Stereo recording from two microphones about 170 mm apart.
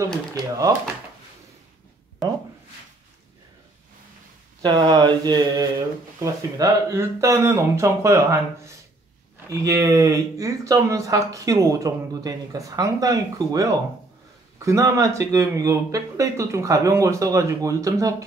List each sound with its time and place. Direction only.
0.4 s speech: 20° right (ahead or behind)
4.6 s speech: 25° right (ahead or behind)
9.5 s speech: 20° right (ahead or behind)